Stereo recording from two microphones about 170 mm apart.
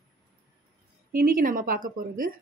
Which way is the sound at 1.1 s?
55° right (ahead or behind).